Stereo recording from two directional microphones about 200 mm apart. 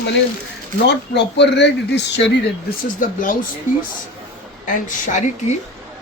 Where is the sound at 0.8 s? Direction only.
60° left (ahead or behind).